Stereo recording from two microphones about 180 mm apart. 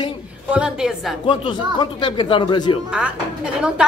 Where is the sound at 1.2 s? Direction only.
25° left (ahead or behind).